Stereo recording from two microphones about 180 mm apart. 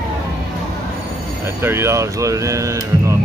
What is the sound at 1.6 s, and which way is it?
Speech, 15° right (ahead or behind).